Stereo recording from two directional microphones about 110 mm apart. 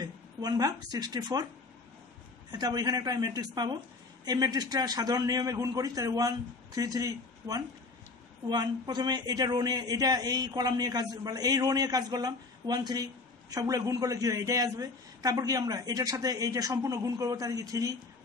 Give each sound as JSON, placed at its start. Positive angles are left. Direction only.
{"t": 0.0, "sound": "speech", "side_deg": -35}
{"t": 2.5, "sound": "a man's voice", "side_deg": -35}